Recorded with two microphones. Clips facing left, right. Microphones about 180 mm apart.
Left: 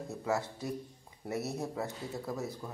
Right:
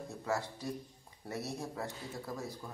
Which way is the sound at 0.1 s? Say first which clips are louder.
Left 3 dB; 20° left (ahead or behind).